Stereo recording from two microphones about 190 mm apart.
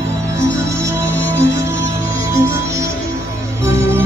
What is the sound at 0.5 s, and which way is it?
Music, 15° right (ahead or behind).